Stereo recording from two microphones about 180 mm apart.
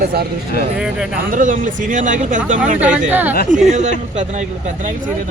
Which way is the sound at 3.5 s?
40° right (ahead or behind).